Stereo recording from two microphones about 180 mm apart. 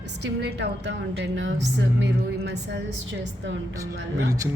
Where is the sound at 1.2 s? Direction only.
90° right.